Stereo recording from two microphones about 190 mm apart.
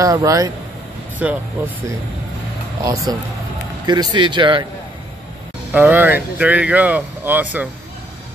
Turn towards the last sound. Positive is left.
turn(degrees=-10)  # may be behind; listen again after turning